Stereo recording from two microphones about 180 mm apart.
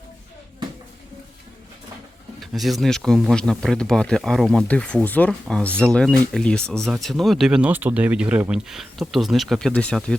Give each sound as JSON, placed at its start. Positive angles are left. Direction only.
{"t": 2.4, "sound": "speech", "side_deg": 0}